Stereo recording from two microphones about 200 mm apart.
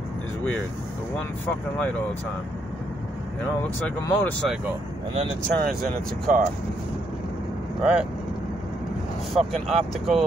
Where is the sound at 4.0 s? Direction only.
10° left (ahead or behind).